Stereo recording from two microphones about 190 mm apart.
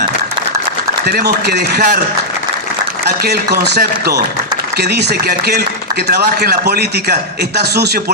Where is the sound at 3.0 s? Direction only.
60° right (ahead or behind).